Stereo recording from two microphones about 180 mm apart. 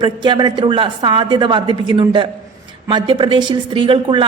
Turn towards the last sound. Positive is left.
turn(degrees=-30)  # may be behind; listen again after turning